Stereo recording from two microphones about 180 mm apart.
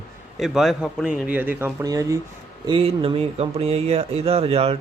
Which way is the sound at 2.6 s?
30° right (ahead or behind).